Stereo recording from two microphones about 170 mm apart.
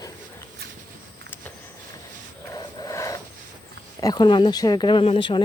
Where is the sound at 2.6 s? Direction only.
20° left (ahead or behind).